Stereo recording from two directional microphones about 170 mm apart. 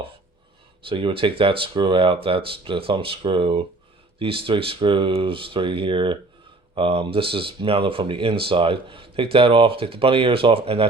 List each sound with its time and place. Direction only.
0.9 s speech: 30° right (ahead or behind)